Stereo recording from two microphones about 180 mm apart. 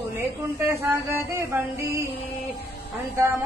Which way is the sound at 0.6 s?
15° right (ahead or behind).